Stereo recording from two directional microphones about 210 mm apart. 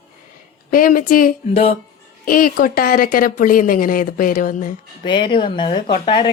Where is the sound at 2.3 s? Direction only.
45° left (ahead or behind).